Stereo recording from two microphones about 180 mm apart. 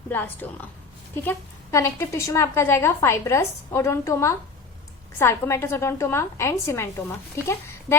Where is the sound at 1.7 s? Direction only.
15° left (ahead or behind).